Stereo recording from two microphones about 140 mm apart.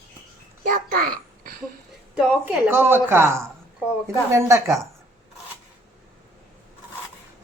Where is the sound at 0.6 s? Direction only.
80° right.